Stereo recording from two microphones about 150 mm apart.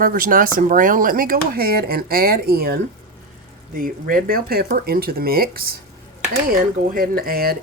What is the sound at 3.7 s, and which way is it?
Speech, 70° right (ahead or behind).